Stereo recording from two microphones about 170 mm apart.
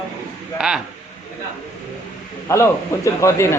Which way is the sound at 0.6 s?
5° right (ahead or behind).